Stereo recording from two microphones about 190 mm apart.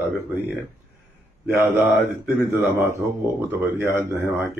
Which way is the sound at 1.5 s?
10° right (ahead or behind).